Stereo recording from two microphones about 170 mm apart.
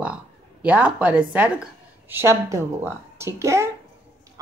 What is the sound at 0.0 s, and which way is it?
A woman's voice, 5° right (ahead or behind).